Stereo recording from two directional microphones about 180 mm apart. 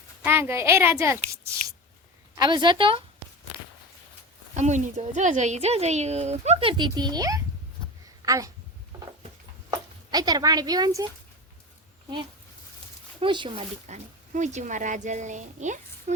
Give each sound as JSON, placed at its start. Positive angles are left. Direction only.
{"t": 0.2, "sound": "a woman's voice", "side_deg": -15}
{"t": 4.5, "sound": "speech", "side_deg": -40}
{"t": 9.6, "sound": "speech", "side_deg": -20}
{"t": 13.1, "sound": "a woman's voice", "side_deg": -25}
{"t": 13.8, "sound": "speech", "side_deg": -40}